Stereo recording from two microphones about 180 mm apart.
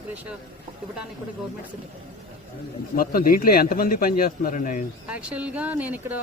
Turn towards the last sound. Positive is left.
turn(degrees=-10)  # may be behind; listen again after turning